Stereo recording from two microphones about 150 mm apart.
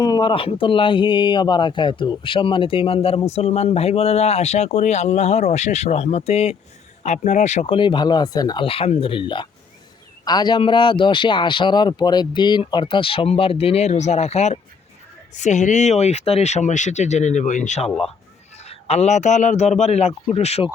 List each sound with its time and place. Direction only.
0.0 s a man's voice: 30° left (ahead or behind)